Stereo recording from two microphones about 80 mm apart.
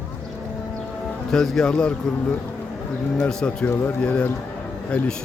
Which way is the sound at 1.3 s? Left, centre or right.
Centre.